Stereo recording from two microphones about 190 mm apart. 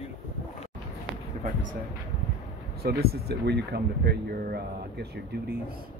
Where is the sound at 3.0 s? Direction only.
55° right (ahead or behind).